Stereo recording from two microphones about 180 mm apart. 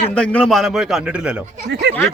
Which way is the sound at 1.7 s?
70° right (ahead or behind).